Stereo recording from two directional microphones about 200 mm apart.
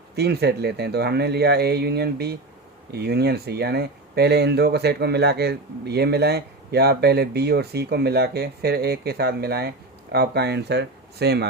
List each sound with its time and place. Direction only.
0.2 s speech: 55° right (ahead or behind)